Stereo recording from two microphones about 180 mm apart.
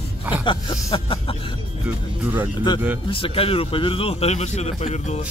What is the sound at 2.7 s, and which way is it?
Music, 25° left (ahead or behind).